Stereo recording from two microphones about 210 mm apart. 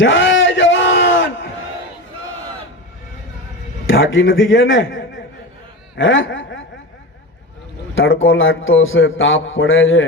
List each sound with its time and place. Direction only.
0.0 s a sound: 65° left (ahead or behind)
3.8 s a man's voice: 65° left (ahead or behind)
6.0 s snicker: 65° left (ahead or behind)
7.9 s a man's voice: 70° left (ahead or behind)